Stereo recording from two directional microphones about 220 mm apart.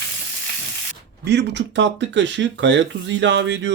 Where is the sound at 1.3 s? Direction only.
50° right (ahead or behind).